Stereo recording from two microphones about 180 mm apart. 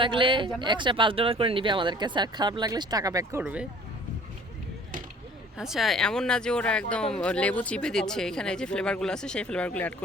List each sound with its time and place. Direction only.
0.0 s speech: 25° right (ahead or behind)
3.4 s speech: 5° right (ahead or behind)
5.5 s speech: centre (ahead or behind)